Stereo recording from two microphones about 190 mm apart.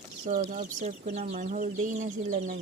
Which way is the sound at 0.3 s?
40° right (ahead or behind).